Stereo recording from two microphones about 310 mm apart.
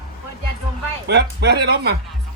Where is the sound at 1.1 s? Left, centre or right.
Right.